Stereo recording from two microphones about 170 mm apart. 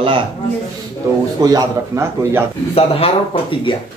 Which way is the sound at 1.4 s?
20° right (ahead or behind).